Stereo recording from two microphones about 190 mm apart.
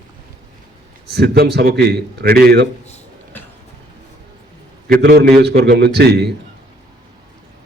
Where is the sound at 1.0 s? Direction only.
60° right (ahead or behind).